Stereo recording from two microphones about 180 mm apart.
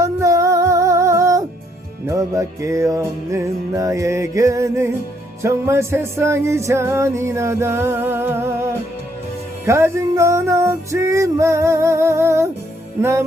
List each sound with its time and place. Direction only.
0.0 s music: 15° right (ahead or behind)